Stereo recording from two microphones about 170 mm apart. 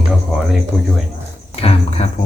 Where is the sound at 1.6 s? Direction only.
35° left (ahead or behind).